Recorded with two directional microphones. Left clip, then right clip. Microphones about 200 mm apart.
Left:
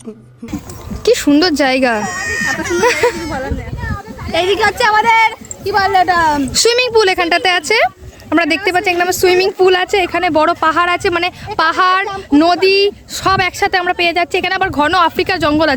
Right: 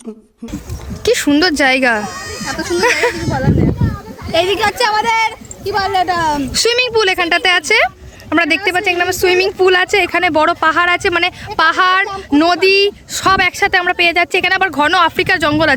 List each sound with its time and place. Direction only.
1.0 s speech: centre (ahead or behind)
2.0 s speech: 20° left (ahead or behind)
4.3 s speech: 60° right (ahead or behind)
4.9 s speech: centre (ahead or behind)